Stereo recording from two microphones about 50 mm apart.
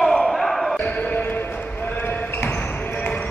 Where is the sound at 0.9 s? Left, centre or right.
Left.